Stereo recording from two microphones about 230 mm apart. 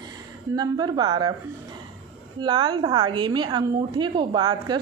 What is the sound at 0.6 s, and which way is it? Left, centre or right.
Speech, centre.